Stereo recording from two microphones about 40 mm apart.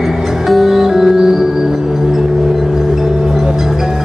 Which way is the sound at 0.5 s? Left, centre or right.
Centre.